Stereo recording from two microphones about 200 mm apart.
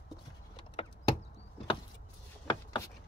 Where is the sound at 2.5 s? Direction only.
20° left (ahead or behind).